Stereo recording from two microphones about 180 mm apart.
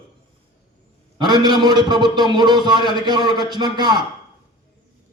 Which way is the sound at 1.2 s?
25° right (ahead or behind).